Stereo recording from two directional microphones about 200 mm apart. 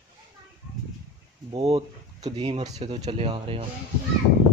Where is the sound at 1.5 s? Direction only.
25° right (ahead or behind).